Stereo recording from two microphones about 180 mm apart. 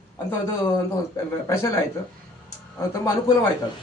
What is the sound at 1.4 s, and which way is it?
Speech, 15° left (ahead or behind).